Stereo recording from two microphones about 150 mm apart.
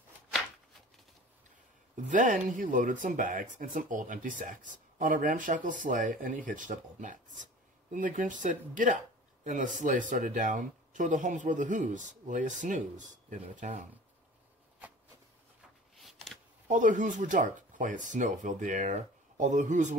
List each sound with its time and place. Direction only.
2.0 s speech: 55° right (ahead or behind)
16.6 s speech: 55° right (ahead or behind)